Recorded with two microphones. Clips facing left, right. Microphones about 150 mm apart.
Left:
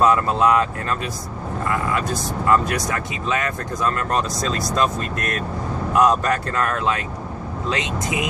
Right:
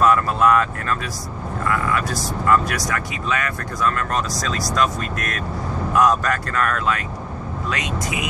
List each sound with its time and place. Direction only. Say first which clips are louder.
0.0 s speech: even; 20° left (ahead or behind)
5.9 s speech: left 1 dB; 20° left (ahead or behind)